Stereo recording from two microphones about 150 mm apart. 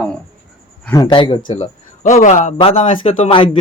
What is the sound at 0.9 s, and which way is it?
Speech, 30° left (ahead or behind).